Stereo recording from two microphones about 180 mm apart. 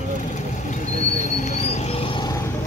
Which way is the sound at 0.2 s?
45° left (ahead or behind).